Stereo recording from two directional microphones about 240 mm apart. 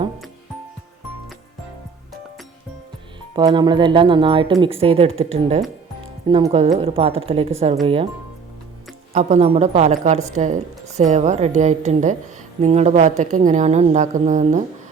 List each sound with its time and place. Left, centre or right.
3.3 s speech: centre
9.1 s speech: right